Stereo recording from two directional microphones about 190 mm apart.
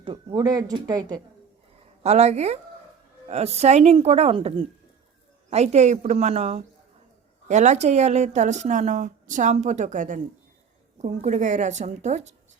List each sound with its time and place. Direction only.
0.0 s speech: 25° right (ahead or behind)
2.0 s speech: 35° right (ahead or behind)